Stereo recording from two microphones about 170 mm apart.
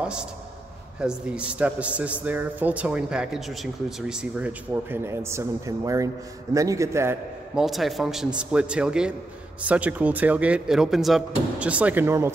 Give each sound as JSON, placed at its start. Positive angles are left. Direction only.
{"t": 0.0, "sound": "a man's voice", "side_deg": -5}
{"t": 7.5, "sound": "a man's voice", "side_deg": 0}